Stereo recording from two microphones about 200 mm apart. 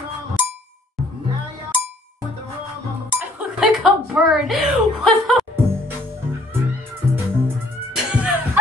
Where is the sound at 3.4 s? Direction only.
5° right (ahead or behind).